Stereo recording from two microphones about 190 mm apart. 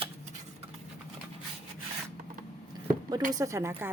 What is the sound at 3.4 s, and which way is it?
Speech, 15° right (ahead or behind).